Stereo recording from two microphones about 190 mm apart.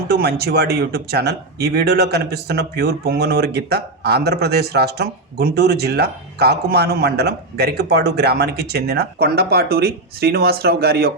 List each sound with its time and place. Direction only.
0.1 s speech: 55° right (ahead or behind)